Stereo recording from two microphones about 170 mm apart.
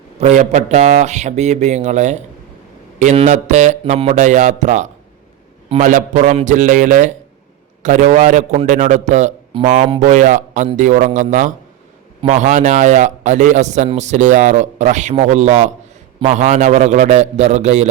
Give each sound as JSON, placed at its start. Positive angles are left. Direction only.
{"t": 0.2, "sound": "a man's voice", "side_deg": -45}